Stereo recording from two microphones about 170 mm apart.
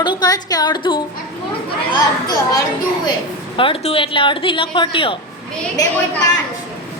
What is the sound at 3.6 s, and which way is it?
A woman's voice, 30° left (ahead or behind).